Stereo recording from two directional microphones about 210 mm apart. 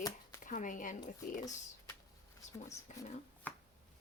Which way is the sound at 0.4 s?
40° left (ahead or behind).